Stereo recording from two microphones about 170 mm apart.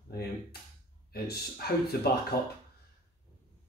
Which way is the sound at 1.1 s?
65° left (ahead or behind).